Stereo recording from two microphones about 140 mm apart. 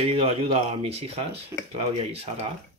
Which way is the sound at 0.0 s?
45° right (ahead or behind).